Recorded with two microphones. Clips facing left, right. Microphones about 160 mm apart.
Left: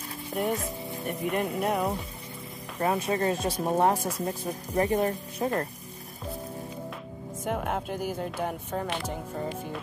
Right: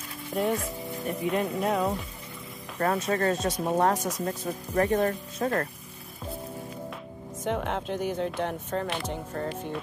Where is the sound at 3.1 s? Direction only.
15° left (ahead or behind).